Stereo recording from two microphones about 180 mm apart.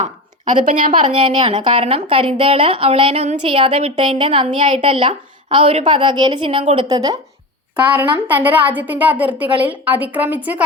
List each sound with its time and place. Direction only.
0.0 s a woman's voice: 45° right (ahead or behind)
1.2 s a woman's voice: 30° right (ahead or behind)
8.1 s a woman's voice: 10° right (ahead or behind)